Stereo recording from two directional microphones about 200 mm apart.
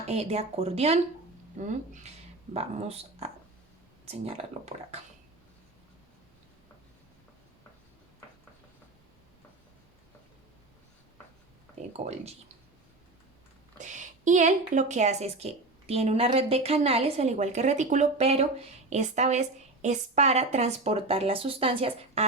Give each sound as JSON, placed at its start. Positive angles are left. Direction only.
{"t": 0.0, "sound": "a woman's voice", "side_deg": -30}
{"t": 11.9, "sound": "a woman's voice", "side_deg": -35}
{"t": 13.7, "sound": "a woman's voice", "side_deg": -40}